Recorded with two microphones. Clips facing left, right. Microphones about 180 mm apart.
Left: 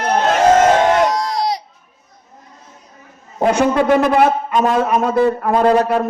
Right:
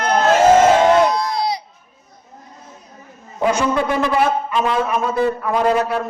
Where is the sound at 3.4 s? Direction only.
65° left (ahead or behind); by 5.5 s 50° left (ahead or behind).